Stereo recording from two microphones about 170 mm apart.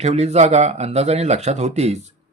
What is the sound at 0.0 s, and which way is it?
Speech, 40° right (ahead or behind).